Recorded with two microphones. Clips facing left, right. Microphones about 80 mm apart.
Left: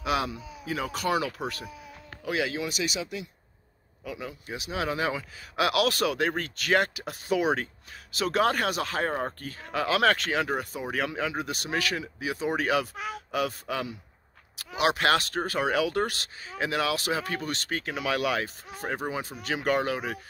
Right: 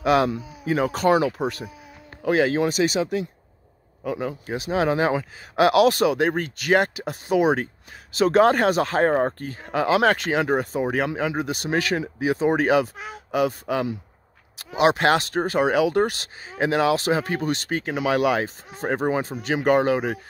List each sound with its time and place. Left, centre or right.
0.0 s speech: right
2.2 s speech: right
9.4 s speech: right
18.9 s speech: right
19.4 s speech: right